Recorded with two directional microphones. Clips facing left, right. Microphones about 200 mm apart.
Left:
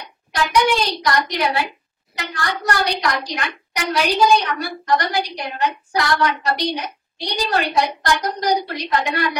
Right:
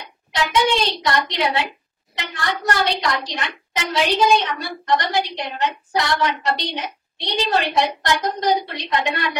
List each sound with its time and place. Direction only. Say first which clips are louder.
0.3 s a woman's voice: left 1 dB; 25° right (ahead or behind)